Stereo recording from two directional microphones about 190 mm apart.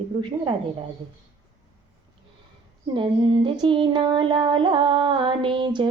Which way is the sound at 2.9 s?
25° right (ahead or behind).